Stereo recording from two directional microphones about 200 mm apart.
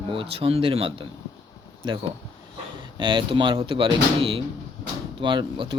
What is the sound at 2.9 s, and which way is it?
Speech, 25° right (ahead or behind).